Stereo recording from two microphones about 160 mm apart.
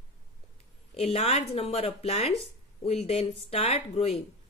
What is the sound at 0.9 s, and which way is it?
Speech, 40° left (ahead or behind).